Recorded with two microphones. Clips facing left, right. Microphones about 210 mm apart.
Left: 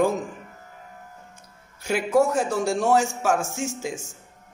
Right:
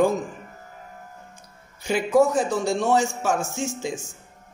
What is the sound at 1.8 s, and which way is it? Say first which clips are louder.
Speech: right 2 dB; 5° left (ahead or behind).